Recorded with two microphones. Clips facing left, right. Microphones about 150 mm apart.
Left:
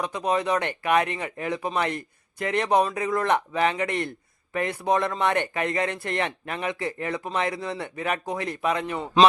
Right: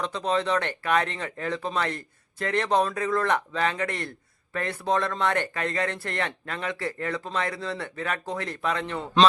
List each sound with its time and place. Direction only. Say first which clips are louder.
0.0 s speech: left 1 dB; 15° left (ahead or behind)